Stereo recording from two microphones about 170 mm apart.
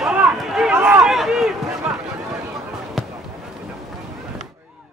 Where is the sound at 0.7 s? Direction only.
15° right (ahead or behind).